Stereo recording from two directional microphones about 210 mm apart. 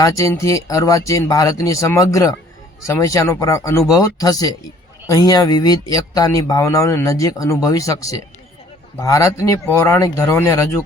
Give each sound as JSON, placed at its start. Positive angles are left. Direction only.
{"t": 0.0, "sound": "speech", "side_deg": 15}